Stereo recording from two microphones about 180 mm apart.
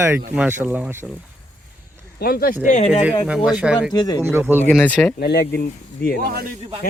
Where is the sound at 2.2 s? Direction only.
55° left (ahead or behind).